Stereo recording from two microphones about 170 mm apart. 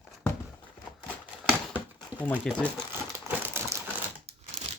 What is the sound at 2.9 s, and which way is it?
Crumpling, 15° right (ahead or behind).